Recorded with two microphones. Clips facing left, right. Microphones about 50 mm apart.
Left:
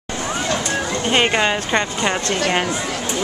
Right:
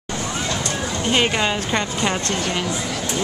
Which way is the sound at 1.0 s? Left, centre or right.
Centre.